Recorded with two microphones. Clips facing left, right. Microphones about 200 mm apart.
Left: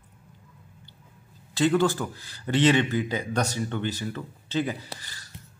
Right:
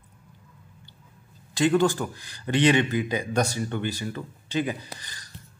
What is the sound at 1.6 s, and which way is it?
Speech, 15° right (ahead or behind).